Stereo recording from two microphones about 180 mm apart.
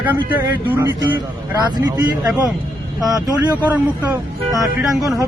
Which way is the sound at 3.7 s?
15° right (ahead or behind).